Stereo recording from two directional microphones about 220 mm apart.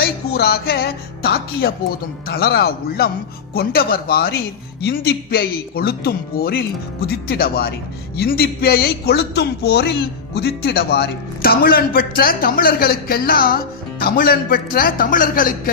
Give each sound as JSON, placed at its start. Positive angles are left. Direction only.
{"t": 0.0, "sound": "speech", "side_deg": 45}